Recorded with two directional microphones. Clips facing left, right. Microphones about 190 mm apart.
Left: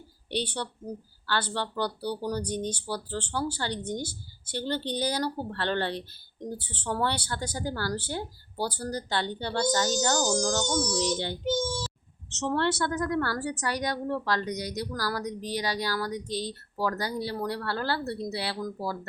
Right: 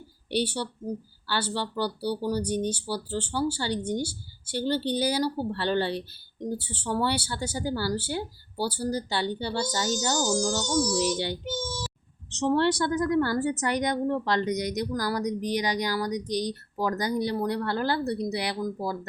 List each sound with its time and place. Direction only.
0.3 s a woman's voice: 10° right (ahead or behind)